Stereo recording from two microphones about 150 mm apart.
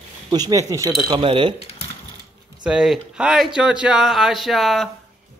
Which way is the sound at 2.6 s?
5° right (ahead or behind).